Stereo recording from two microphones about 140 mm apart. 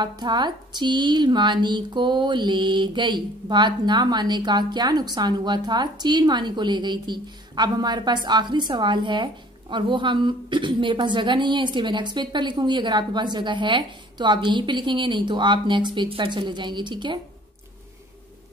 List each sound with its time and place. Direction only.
0.0 s speech: 30° right (ahead or behind)